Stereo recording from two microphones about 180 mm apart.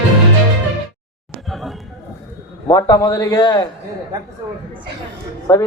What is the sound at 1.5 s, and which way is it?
Music, centre (ahead or behind).